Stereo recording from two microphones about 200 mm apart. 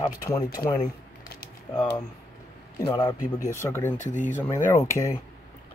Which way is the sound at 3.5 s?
15° left (ahead or behind).